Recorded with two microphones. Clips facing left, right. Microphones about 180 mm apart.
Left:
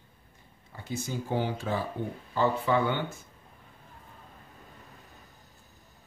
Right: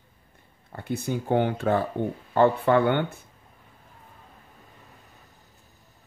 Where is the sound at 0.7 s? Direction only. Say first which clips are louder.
Right 6 dB; 60° right (ahead or behind).